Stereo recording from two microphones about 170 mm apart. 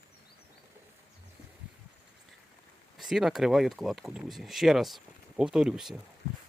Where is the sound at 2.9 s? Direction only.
Centre (ahead or behind).